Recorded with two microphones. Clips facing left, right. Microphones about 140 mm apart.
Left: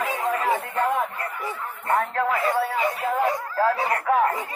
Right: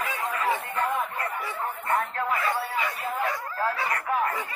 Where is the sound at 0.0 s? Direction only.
35° left (ahead or behind).